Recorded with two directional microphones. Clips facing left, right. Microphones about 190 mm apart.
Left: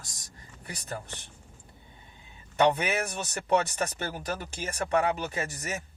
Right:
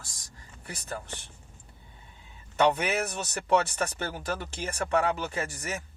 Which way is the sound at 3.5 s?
15° left (ahead or behind).